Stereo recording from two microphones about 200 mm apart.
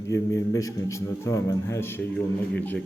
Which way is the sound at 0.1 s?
15° left (ahead or behind).